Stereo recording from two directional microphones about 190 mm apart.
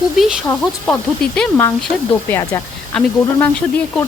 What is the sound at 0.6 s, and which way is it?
Speech, 5° left (ahead or behind).